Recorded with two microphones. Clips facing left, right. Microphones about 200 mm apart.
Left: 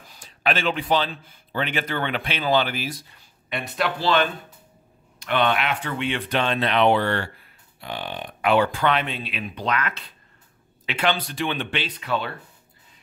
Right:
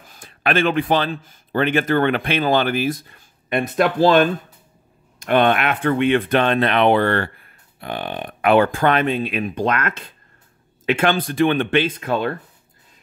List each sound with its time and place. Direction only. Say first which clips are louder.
0.1 s a man's voice: right 4 dB; 55° right (ahead or behind)